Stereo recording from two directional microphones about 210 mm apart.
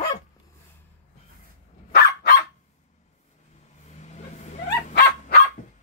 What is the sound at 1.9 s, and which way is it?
Dog, 40° left (ahead or behind).